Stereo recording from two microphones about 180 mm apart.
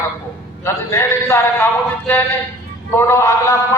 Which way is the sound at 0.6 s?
15° left (ahead or behind).